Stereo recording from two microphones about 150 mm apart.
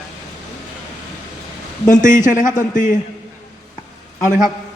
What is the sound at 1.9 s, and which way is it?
A man's voice, 55° left (ahead or behind).